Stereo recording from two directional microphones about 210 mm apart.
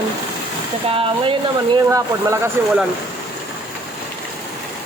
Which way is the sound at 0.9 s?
25° right (ahead or behind).